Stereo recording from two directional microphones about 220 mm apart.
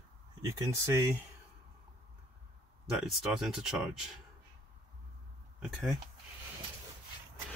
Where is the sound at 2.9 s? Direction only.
Centre (ahead or behind).